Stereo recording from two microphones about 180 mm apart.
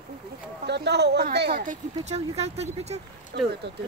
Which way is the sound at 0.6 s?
70° right (ahead or behind).